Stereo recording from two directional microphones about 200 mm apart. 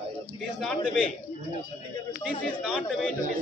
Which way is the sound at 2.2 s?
Centre (ahead or behind).